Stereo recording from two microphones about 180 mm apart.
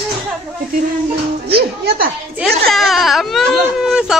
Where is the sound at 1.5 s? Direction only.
60° right (ahead or behind).